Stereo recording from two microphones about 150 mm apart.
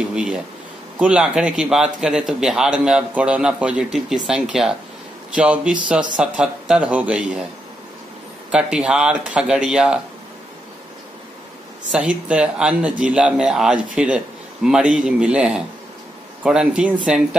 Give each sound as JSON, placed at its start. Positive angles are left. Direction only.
{"t": 0.0, "sound": "a man's voice", "side_deg": -5}
{"t": 8.5, "sound": "a man's voice", "side_deg": -5}
{"t": 11.9, "sound": "a man's voice", "side_deg": -10}